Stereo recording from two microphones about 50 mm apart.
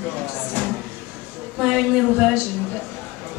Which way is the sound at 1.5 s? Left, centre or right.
Centre.